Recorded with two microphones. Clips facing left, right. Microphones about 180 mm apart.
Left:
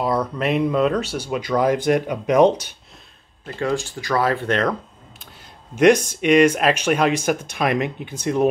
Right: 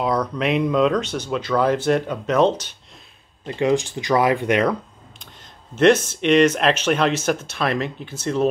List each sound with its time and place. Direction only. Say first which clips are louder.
0.0 s speech: even; 5° left (ahead or behind)
3.4 s speech: right 4 dB; 20° right (ahead or behind)
5.8 s speech: left 1 dB; 10° left (ahead or behind)